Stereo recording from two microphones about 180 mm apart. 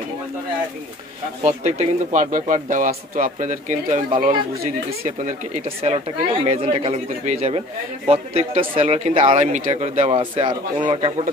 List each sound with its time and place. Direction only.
1.4 s speech: 35° right (ahead or behind)
4.1 s speech: 30° right (ahead or behind)
5.0 s speech: 45° right (ahead or behind)
10.1 s speech: 25° right (ahead or behind)